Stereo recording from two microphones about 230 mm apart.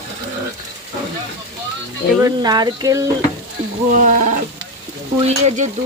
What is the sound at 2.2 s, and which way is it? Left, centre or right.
Speech, centre.